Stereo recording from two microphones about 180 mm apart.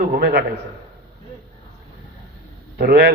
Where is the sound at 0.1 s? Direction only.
60° right (ahead or behind).